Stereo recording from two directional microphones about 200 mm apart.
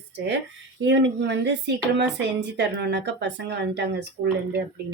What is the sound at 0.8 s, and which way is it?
Speech, 65° right (ahead or behind).